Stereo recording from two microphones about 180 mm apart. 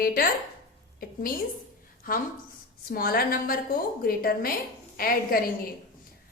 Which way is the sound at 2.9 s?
55° left (ahead or behind).